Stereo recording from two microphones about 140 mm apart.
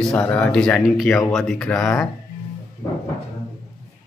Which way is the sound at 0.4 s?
5° left (ahead or behind).